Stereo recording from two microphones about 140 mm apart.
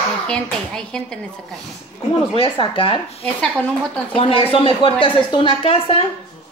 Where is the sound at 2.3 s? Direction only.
40° left (ahead or behind).